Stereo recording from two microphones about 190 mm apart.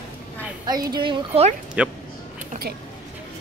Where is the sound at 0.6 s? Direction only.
20° right (ahead or behind).